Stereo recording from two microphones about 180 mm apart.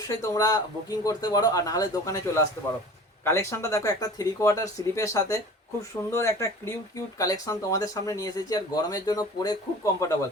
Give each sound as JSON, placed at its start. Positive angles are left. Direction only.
{"t": 0.1, "sound": "speech", "side_deg": 20}